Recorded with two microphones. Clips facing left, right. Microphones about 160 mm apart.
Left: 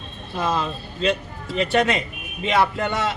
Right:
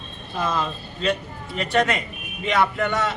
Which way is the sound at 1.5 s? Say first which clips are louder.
Left 2 dB; 30° left (ahead or behind).